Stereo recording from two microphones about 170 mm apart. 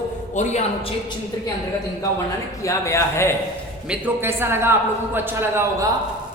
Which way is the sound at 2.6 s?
20° left (ahead or behind).